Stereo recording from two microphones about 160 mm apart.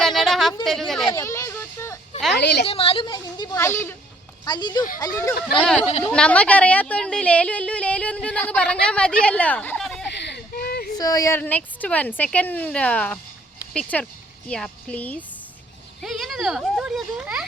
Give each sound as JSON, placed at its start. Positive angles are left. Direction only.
{"t": 0.0, "sound": "a sound", "side_deg": 0}
{"t": 0.6, "sound": "a woman's voice", "side_deg": 0}
{"t": 1.1, "sound": "a sound", "side_deg": 20}
{"t": 2.3, "sound": "a woman's voice", "side_deg": 90}
{"t": 2.6, "sound": "a woman's voice", "side_deg": 35}
{"t": 4.4, "sound": "a woman's voice", "side_deg": 25}
{"t": 6.0, "sound": "speech", "side_deg": 5}
{"t": 10.1, "sound": "a sound", "side_deg": 90}
{"t": 10.9, "sound": "a woman's voice", "side_deg": 25}
{"t": 11.3, "sound": "speech", "side_deg": 10}